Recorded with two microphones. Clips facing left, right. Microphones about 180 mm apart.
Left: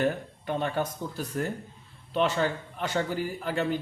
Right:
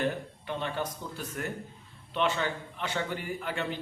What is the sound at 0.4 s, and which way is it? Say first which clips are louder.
A man's voice: left 5 dB; 45° left (ahead or behind).